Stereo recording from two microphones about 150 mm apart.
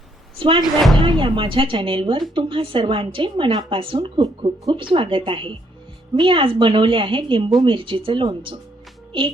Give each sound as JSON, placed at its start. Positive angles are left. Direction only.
{"t": 0.3, "sound": "a woman's voice", "side_deg": -35}